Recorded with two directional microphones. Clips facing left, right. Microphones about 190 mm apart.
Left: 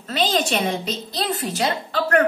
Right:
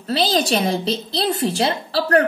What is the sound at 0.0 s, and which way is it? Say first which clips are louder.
A woman's voice: right 2 dB; 35° right (ahead or behind).